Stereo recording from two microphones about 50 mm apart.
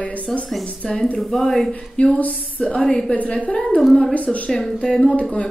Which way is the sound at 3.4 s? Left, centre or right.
Left.